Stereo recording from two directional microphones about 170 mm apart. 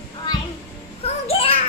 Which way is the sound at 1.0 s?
35° left (ahead or behind).